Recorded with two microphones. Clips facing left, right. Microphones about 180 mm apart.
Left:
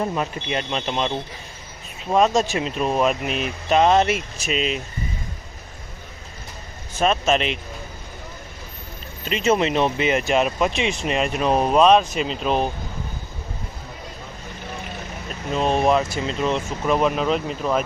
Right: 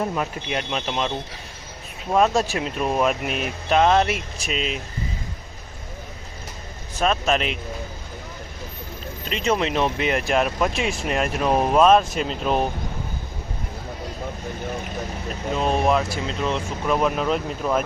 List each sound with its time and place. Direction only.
0.0 s speech: centre (ahead or behind)
7.0 s speech: centre (ahead or behind)
9.3 s speech: 5° left (ahead or behind)
15.5 s speech: centre (ahead or behind)